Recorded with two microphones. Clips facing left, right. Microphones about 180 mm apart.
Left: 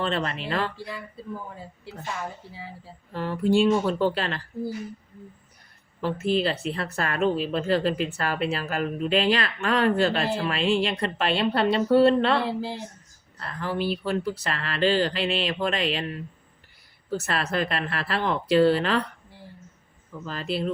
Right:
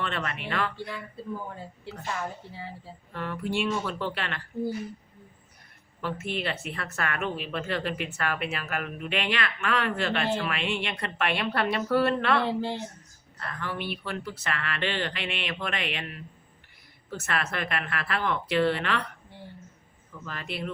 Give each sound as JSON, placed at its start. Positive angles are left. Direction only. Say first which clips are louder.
{"t": 0.0, "sound": "speech", "louder": "left 5 dB", "side_deg": 30}
{"t": 1.5, "sound": "a woman's voice", "louder": "right 1 dB", "side_deg": 5}
{"t": 3.1, "sound": "speech", "louder": "left 8 dB", "side_deg": 35}
{"t": 6.0, "sound": "speech", "louder": "left 8 dB", "side_deg": 30}
{"t": 12.4, "sound": "a woman's voice", "louder": "even", "side_deg": 0}
{"t": 13.4, "sound": "speech", "louder": "left 6 dB", "side_deg": 30}
{"t": 20.2, "sound": "speech", "louder": "left 7 dB", "side_deg": 30}